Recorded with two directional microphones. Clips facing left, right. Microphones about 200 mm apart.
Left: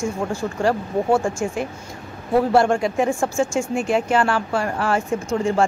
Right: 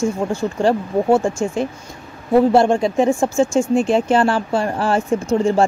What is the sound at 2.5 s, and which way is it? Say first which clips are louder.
Speech: right 3 dB; 20° right (ahead or behind).